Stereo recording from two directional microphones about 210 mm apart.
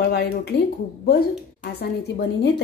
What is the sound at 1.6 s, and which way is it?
Speech, 50° left (ahead or behind).